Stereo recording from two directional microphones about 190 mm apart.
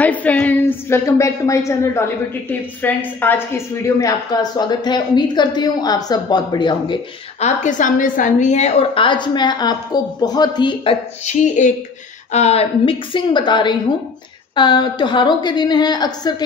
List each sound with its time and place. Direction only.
0.0 s a woman's voice: 10° left (ahead or behind)
7.3 s a woman's voice: 40° left (ahead or behind); by 16.4 s 20° left (ahead or behind)